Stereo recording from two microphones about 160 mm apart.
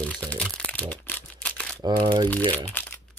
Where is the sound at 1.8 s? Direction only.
25° right (ahead or behind).